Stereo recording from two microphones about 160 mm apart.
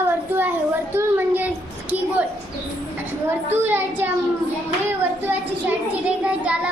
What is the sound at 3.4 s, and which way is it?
Speech, 10° right (ahead or behind).